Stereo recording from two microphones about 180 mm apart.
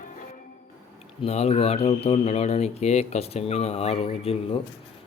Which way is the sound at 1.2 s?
35° left (ahead or behind).